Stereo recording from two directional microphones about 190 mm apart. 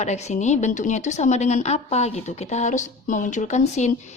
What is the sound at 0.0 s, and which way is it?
A woman's voice, 35° left (ahead or behind).